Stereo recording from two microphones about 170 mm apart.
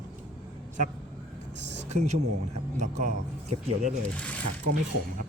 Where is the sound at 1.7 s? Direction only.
40° right (ahead or behind).